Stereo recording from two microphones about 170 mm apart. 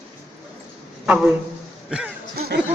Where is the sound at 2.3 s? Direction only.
65° right (ahead or behind).